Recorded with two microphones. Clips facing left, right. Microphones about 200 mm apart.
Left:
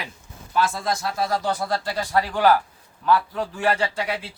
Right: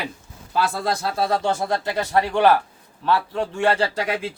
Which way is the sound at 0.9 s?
30° right (ahead or behind).